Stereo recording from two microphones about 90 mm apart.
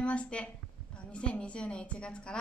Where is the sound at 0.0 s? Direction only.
15° left (ahead or behind).